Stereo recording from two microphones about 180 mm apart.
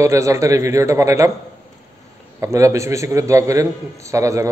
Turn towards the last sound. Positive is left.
turn(degrees=-15)  # may be behind; listen again after turning